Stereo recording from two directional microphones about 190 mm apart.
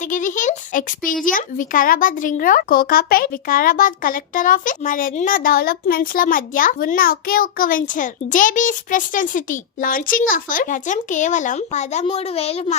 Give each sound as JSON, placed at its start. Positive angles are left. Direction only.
{"t": 0.1, "sound": "speech", "side_deg": 40}